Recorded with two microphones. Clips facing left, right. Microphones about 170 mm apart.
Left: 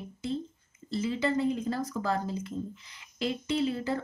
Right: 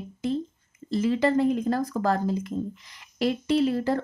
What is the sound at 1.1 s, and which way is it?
Speech, 50° right (ahead or behind).